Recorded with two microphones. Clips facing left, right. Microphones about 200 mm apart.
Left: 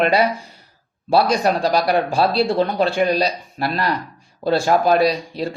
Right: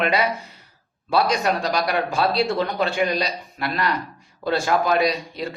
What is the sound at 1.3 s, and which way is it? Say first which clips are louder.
Speech: left 4 dB; 30° left (ahead or behind).